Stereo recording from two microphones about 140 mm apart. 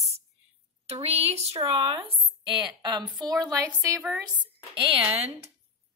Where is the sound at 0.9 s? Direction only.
50° right (ahead or behind); by 3.0 s 35° right (ahead or behind).